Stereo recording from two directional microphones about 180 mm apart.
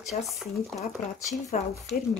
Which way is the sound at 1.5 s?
45° left (ahead or behind).